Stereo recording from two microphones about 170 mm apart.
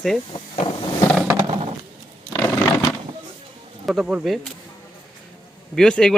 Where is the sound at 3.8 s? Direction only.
Centre (ahead or behind).